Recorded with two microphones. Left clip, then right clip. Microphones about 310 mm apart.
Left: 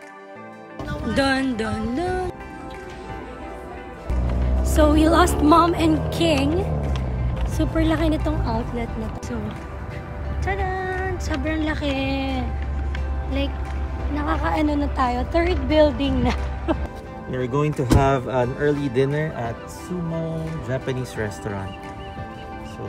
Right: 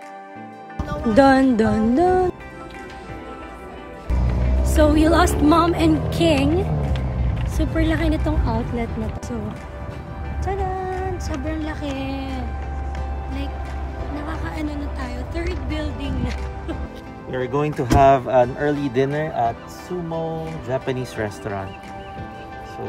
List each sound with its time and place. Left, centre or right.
0.8 s speech: right
4.7 s a woman's voice: centre
10.4 s music: centre
12.0 s a woman's voice: centre
14.1 s a woman's voice: centre
17.3 s speech: centre
20.7 s speech: centre